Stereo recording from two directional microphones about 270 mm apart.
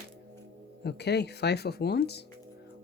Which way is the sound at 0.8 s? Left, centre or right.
Left.